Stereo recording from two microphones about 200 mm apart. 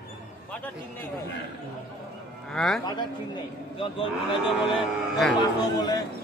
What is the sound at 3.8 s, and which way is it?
Speech, 25° left (ahead or behind).